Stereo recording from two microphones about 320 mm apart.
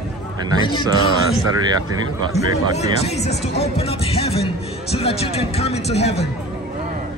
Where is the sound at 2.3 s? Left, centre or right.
Centre.